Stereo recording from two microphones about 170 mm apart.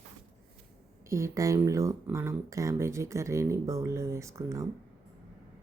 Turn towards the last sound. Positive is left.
turn(degrees=-20)  # may be behind; listen again after turning